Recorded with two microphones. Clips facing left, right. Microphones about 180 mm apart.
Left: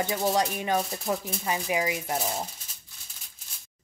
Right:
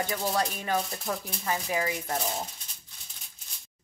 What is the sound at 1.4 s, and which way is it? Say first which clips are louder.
Speech: left 1 dB; 15° left (ahead or behind).